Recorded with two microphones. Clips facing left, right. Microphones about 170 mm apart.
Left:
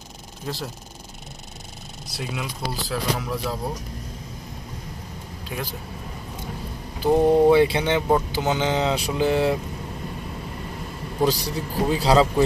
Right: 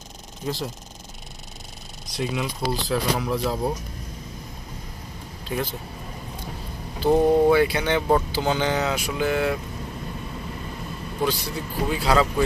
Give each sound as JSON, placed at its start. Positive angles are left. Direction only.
{"t": 0.5, "sound": "speech", "side_deg": 0}
{"t": 2.1, "sound": "speech", "side_deg": 5}
{"t": 7.0, "sound": "speech", "side_deg": 15}
{"t": 7.5, "sound": "a man's voice", "side_deg": 25}
{"t": 11.2, "sound": "a man's voice", "side_deg": 35}